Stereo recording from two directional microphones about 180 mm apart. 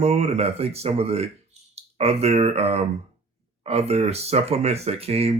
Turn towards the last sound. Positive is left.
turn(degrees=-35)  # may be behind; listen again after turning